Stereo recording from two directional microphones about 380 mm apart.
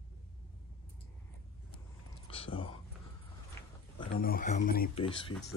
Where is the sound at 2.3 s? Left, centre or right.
Centre.